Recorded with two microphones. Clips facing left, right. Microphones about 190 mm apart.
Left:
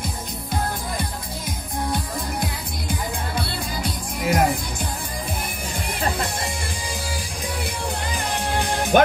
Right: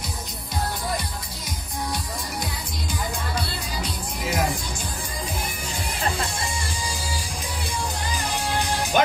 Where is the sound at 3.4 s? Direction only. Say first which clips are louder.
Left 2 dB; 55° left (ahead or behind).